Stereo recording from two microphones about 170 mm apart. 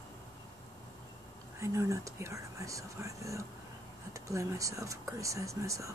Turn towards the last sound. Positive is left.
turn(degrees=-20)  # may be behind; listen again after turning